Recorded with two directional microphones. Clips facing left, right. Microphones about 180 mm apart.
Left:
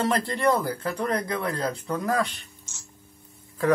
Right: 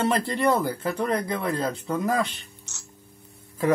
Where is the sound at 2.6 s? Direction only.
70° right (ahead or behind).